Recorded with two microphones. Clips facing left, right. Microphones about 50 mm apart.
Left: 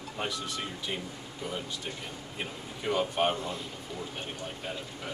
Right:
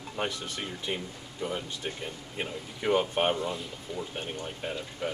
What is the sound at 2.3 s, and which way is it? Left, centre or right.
Speech, right.